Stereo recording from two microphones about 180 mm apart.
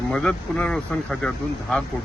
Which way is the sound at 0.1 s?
5° left (ahead or behind).